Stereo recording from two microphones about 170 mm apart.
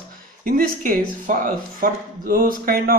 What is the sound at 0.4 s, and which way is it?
Speech, 55° right (ahead or behind).